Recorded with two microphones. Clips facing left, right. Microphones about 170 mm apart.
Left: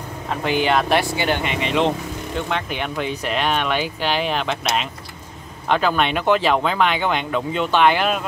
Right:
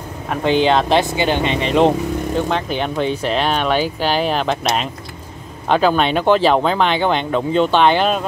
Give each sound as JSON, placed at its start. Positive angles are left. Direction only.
{"t": 0.3, "sound": "speech", "side_deg": -20}